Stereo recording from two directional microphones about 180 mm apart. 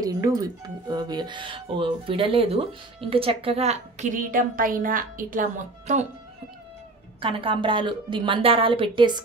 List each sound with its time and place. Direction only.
0.0 s speech: 20° right (ahead or behind); by 6.0 s 45° right (ahead or behind)
7.2 s a woman's voice: 30° right (ahead or behind)